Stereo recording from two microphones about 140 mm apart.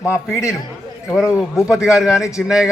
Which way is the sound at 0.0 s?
20° left (ahead or behind).